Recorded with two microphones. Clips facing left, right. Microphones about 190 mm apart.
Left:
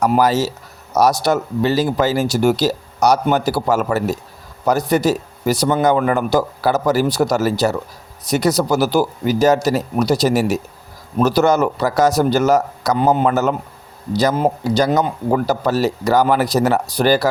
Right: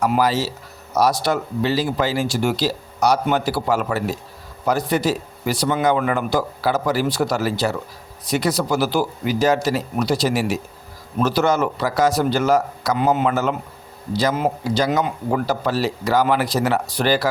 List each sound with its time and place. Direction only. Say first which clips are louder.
0.0 s speech: left 4 dB; 45° left (ahead or behind)